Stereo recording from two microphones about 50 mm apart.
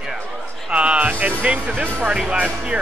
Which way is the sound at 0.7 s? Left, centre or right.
Right.